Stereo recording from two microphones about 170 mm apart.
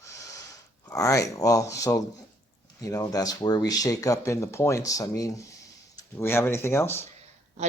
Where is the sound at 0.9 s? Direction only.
20° left (ahead or behind).